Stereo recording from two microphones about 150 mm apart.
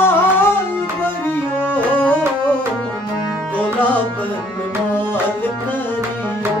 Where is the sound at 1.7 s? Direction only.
10° left (ahead or behind).